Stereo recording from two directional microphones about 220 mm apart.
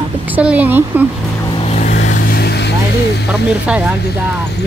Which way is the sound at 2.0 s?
40° left (ahead or behind).